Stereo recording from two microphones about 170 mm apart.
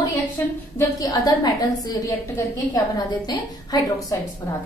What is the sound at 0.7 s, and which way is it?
A woman's voice, 20° left (ahead or behind).